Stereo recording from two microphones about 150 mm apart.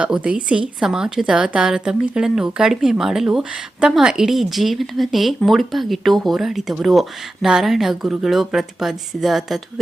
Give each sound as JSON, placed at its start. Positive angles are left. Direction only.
{"t": 0.0, "sound": "speech", "side_deg": -5}